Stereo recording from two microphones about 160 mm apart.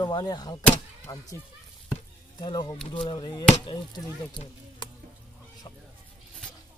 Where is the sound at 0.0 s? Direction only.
25° left (ahead or behind).